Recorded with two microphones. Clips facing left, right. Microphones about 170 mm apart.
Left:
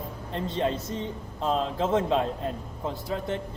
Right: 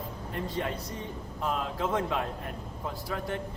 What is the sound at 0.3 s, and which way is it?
A man's voice, 25° left (ahead or behind).